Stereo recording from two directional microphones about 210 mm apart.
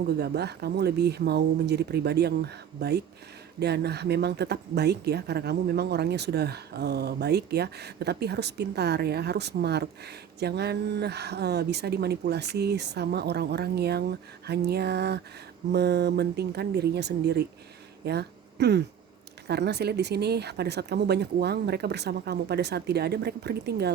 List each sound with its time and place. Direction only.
0.2 s speech: 50° right (ahead or behind)
18.0 s a sound: 50° right (ahead or behind)
19.5 s speech: 50° right (ahead or behind)